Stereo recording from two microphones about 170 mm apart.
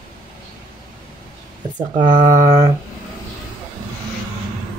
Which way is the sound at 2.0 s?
25° right (ahead or behind).